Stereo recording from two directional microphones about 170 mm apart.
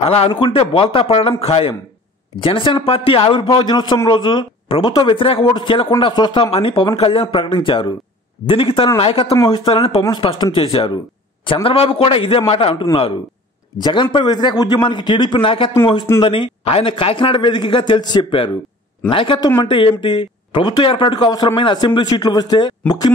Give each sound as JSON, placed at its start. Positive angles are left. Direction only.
{"t": 0.0, "sound": "speech", "side_deg": 35}